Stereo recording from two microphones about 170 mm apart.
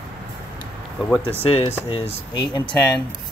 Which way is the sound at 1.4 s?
35° left (ahead or behind).